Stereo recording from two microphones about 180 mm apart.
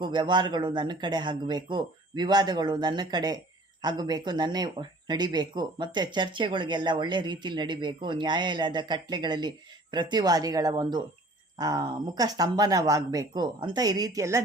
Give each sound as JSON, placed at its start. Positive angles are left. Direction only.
{"t": 0.0, "sound": "speech", "side_deg": -25}